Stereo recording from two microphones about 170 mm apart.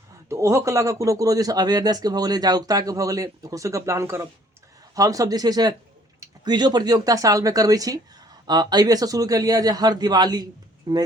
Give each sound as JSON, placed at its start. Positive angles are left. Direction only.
{"t": 0.3, "sound": "speech", "side_deg": -15}